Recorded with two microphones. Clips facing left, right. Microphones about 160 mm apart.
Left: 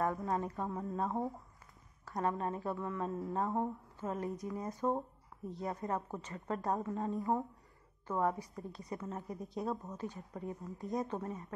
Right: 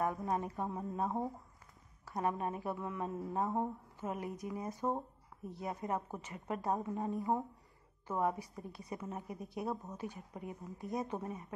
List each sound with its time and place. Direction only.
0.0 s speech: 20° right (ahead or behind)
2.0 s a woman's voice: 15° right (ahead or behind)